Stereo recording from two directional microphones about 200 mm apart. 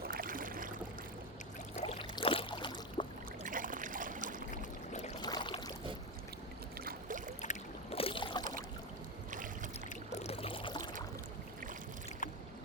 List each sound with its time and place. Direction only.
0.0 s boat: 45° right (ahead or behind)
1.9 s boat: 25° left (ahead or behind)
3.4 s a sound: 40° right (ahead or behind)
4.5 s a sound: 40° left (ahead or behind)
5.2 s a sound: 20° left (ahead or behind)
6.7 s boat: 45° right (ahead or behind)
7.4 s boat: 30° left (ahead or behind)
9.3 s boat: 40° right (ahead or behind)
9.9 s pour: 35° left (ahead or behind)